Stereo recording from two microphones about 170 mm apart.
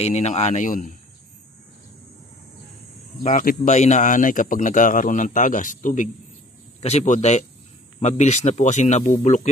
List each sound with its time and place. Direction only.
0.0 s speech: 40° left (ahead or behind)
3.3 s speech: 45° left (ahead or behind)